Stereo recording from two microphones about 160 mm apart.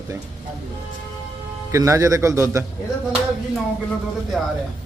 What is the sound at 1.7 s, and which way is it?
Speech, 20° right (ahead or behind).